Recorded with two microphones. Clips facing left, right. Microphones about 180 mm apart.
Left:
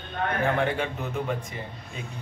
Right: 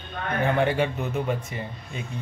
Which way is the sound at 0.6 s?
5° right (ahead or behind).